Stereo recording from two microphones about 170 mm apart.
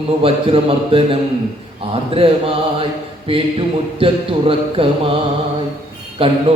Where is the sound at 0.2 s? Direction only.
35° right (ahead or behind).